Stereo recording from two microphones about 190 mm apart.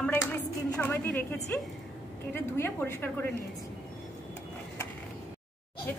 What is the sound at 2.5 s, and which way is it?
Speech, 10° left (ahead or behind).